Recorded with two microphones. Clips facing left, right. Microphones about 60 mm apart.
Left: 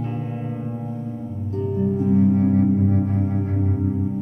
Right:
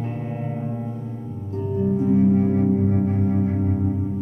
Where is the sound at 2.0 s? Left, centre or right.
Centre.